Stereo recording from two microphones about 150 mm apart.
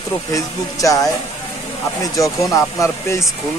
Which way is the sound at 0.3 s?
20° left (ahead or behind).